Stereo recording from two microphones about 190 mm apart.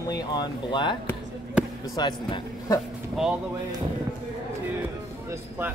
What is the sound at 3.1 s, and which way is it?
Speech, 5° right (ahead or behind).